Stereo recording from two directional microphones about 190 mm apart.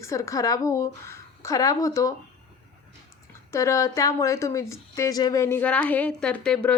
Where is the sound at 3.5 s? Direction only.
15° left (ahead or behind).